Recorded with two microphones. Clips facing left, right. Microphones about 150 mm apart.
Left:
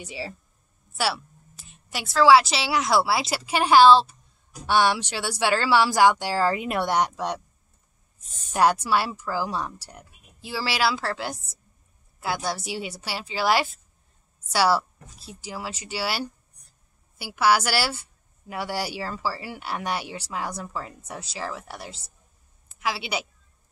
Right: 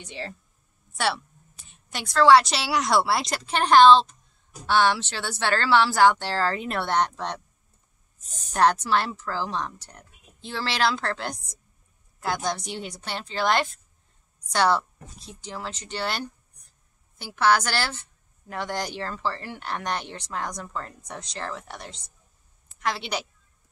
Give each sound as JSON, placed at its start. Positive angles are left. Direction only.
{"t": 0.0, "sound": "a woman's voice", "side_deg": 5}
{"t": 8.2, "sound": "speech", "side_deg": -40}
{"t": 8.5, "sound": "a woman's voice", "side_deg": 10}